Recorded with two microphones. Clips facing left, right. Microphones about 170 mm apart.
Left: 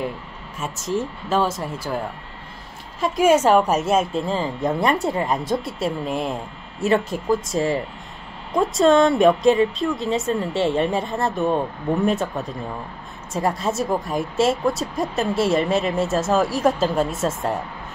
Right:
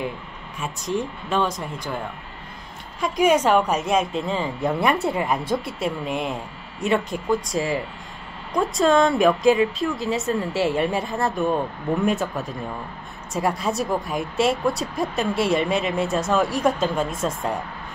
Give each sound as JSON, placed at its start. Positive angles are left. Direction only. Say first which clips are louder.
{"t": 0.6, "sound": "speech", "louder": "left 1 dB", "side_deg": 0}
{"t": 3.0, "sound": "speech", "louder": "left 2 dB", "side_deg": 5}
{"t": 5.6, "sound": "speech", "louder": "left 2 dB", "side_deg": 25}
{"t": 5.9, "sound": "speech", "louder": "left 1 dB", "side_deg": -5}